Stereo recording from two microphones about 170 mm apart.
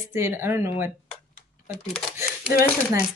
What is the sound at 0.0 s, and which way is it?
Speech, 15° right (ahead or behind).